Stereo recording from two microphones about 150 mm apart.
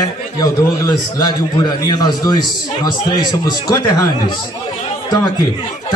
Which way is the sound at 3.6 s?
25° left (ahead or behind).